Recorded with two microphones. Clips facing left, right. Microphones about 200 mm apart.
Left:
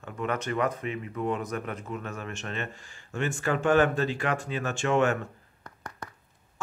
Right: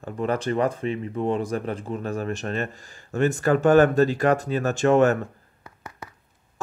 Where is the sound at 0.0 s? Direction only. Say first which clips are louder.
Right 6 dB; 35° right (ahead or behind).